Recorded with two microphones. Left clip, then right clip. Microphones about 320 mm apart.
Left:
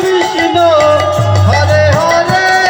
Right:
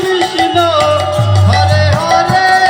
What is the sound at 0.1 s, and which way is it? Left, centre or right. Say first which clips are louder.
Music: right 2 dB; centre.